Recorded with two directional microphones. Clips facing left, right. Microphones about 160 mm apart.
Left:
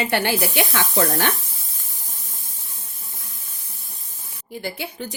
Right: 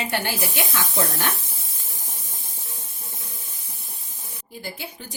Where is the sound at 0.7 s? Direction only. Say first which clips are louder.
Left 4 dB; 90° left.